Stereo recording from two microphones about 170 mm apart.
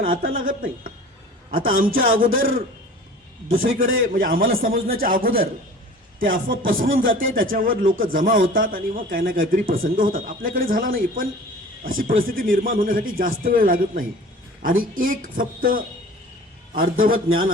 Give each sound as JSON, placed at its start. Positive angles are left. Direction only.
{"t": 0.2, "sound": "speech", "side_deg": -55}
{"t": 3.6, "sound": "speech", "side_deg": -55}